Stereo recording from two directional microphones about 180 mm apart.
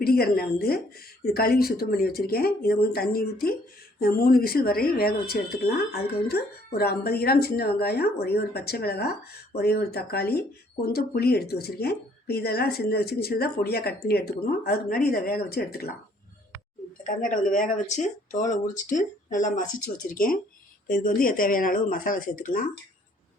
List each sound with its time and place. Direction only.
0.0 s speech: 55° left (ahead or behind)
17.2 s speech: 45° left (ahead or behind)